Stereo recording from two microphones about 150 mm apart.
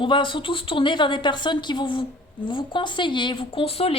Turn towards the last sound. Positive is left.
turn(degrees=40)  # may be behind; listen again after turning